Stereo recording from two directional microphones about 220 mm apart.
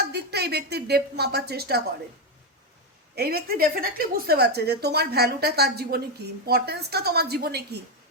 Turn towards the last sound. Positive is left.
turn(degrees=-45)  # may be behind; listen again after turning